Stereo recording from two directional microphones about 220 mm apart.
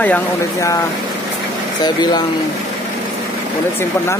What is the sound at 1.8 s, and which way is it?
Speech, 20° left (ahead or behind).